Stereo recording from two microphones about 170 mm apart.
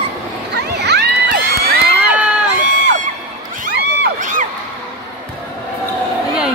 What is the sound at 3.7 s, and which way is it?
Crowd, 80° right.